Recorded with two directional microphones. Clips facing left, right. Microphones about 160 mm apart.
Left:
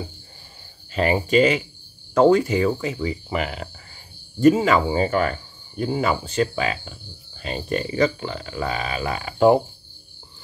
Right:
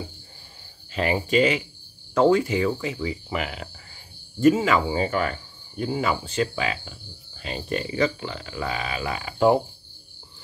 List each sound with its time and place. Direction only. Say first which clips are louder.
0.9 s speech: left 3 dB; 45° left (ahead or behind)